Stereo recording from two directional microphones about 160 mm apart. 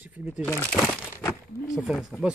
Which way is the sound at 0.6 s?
5° right (ahead or behind).